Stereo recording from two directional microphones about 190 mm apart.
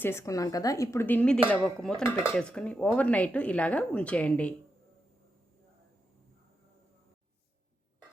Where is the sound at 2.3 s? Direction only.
5° left (ahead or behind).